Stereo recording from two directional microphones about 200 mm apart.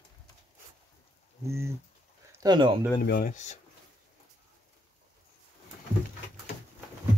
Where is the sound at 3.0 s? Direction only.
50° left (ahead or behind).